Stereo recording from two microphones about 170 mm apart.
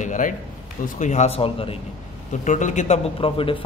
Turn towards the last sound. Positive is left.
turn(degrees=30)  # may be behind; listen again after turning